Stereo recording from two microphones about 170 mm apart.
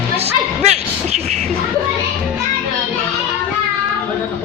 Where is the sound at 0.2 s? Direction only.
40° right (ahead or behind).